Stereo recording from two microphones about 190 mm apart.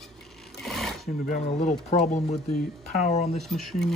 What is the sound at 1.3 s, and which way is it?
Speech, 40° left (ahead or behind).